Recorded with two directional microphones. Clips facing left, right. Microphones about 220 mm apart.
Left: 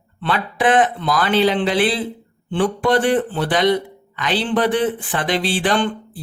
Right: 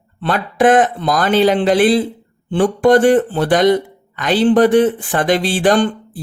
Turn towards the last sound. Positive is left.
turn(degrees=-45)  # may be behind; listen again after turning